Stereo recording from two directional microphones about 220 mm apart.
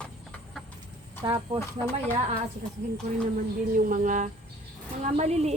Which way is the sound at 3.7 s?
35° right (ahead or behind).